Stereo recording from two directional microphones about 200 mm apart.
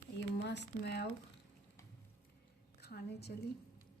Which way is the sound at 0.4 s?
60° left (ahead or behind).